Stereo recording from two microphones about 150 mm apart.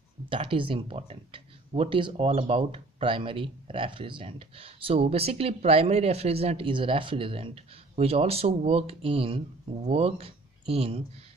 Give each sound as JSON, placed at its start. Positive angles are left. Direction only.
{"t": 0.3, "sound": "speech", "side_deg": -35}